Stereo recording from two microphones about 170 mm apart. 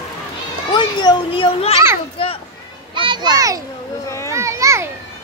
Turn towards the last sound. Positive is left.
turn(degrees=-15)  # may be behind; listen again after turning